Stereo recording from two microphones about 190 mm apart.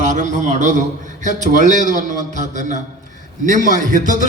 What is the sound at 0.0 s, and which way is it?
A man's voice, 40° right (ahead or behind).